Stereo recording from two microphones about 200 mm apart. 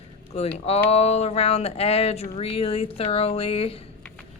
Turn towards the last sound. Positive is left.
turn(degrees=30)  # may be behind; listen again after turning